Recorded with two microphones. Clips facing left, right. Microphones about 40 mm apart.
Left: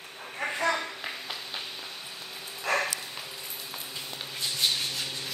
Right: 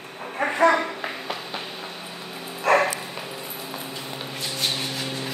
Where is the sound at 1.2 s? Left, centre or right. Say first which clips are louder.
Right 6 dB; right.